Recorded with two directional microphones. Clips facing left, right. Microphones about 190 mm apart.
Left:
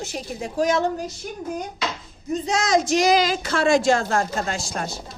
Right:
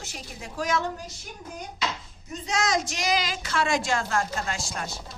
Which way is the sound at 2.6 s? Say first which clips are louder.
Left 7 dB; 25° left (ahead or behind).